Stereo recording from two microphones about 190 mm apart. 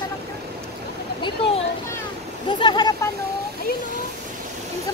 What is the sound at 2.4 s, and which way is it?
Vehicle, 25° left (ahead or behind).